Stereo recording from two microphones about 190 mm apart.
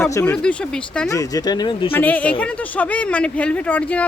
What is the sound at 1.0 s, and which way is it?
Speech, 15° left (ahead or behind).